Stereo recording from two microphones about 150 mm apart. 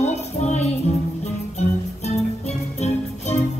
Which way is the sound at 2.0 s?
45° left (ahead or behind).